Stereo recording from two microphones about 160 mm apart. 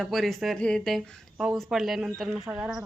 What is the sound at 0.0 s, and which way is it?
Speech, centre (ahead or behind).